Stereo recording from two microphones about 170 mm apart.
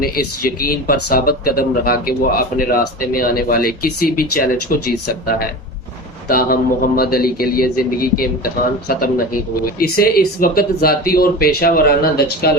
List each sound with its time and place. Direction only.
0.0 s speech: 60° left (ahead or behind)